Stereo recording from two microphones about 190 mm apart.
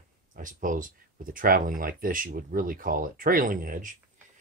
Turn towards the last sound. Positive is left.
turn(degrees=-45)  # may be behind; listen again after turning